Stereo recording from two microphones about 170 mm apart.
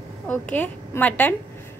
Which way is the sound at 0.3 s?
10° left (ahead or behind).